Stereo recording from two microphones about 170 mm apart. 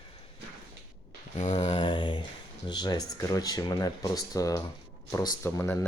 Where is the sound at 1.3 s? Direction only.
45° left (ahead or behind).